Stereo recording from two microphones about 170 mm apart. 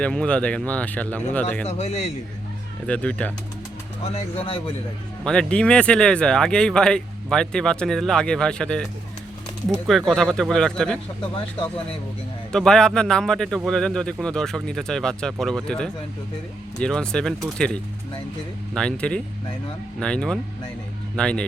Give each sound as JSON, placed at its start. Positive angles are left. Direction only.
{"t": 0.0, "sound": "speech", "side_deg": 5}
{"t": 1.6, "sound": "speech", "side_deg": 40}
{"t": 2.8, "sound": "speech", "side_deg": 5}
{"t": 4.1, "sound": "speech", "side_deg": 35}
{"t": 5.2, "sound": "speech", "side_deg": 5}
{"t": 10.1, "sound": "speech", "side_deg": 0}
{"t": 12.5, "sound": "speech", "side_deg": 5}
{"t": 18.7, "sound": "speech", "side_deg": 5}